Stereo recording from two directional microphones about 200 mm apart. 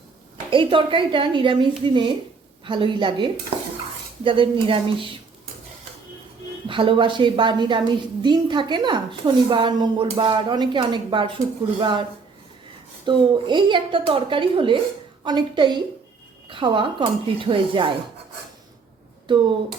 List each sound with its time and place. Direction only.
0.5 s a woman's voice: 25° right (ahead or behind)
6.7 s a woman's voice: 25° right (ahead or behind)
13.1 s a woman's voice: 25° right (ahead or behind)
19.3 s a woman's voice: 25° right (ahead or behind)